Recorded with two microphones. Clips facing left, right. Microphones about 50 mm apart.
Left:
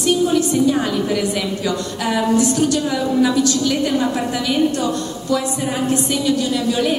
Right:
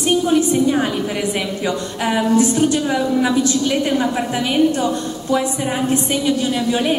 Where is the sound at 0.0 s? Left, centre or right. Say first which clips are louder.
Right 1 dB; right.